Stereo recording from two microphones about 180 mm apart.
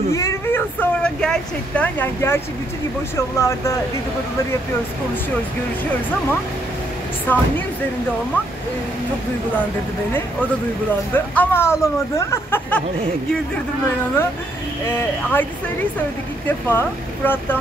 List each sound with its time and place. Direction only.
0.1 s speech: 15° left (ahead or behind)
7.3 s speech: 15° left (ahead or behind)
11.3 s speech: 15° left (ahead or behind)
14.9 s speech: 15° left (ahead or behind)
16.4 s speech: 10° left (ahead or behind)